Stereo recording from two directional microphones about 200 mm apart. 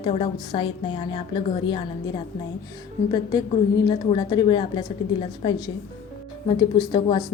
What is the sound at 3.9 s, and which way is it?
A woman's voice, 25° left (ahead or behind).